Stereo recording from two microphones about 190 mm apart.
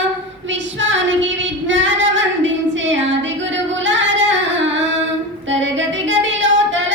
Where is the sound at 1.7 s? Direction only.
75° right (ahead or behind).